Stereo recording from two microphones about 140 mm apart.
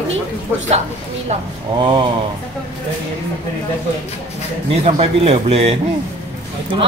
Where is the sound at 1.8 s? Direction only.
35° right (ahead or behind).